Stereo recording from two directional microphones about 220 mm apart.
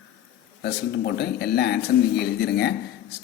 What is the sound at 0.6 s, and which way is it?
Speech, 45° left (ahead or behind).